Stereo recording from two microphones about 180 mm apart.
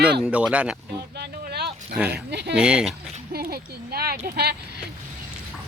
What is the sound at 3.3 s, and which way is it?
Speech, 60° right (ahead or behind).